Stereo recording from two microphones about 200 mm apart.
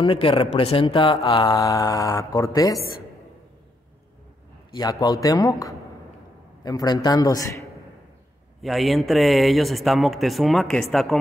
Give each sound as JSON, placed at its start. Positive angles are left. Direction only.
{"t": 0.0, "sound": "speech", "side_deg": 25}
{"t": 4.7, "sound": "a man's voice", "side_deg": 20}
{"t": 8.6, "sound": "speech", "side_deg": 0}